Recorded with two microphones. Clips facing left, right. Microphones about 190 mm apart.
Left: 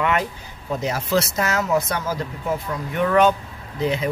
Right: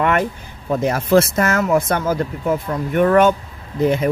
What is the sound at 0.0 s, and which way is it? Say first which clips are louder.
Speech: right 4 dB; 50° right (ahead or behind).